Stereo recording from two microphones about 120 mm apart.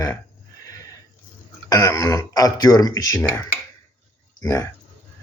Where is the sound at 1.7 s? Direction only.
30° left (ahead or behind).